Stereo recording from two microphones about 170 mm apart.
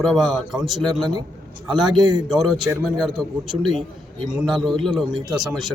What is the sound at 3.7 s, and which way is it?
Speech, 30° right (ahead or behind).